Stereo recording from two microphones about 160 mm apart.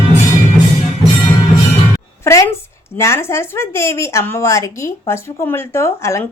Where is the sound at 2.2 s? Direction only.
15° left (ahead or behind).